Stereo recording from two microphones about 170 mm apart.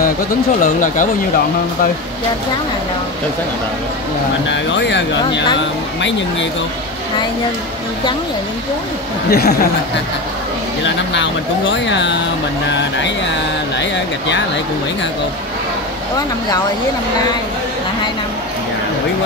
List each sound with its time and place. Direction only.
0.6 s speech: 50° left (ahead or behind)
4.5 s speech: 90° left
9.3 s speech: 70° left (ahead or behind)
11.7 s speech: 90° left
13.7 s speech: 90° left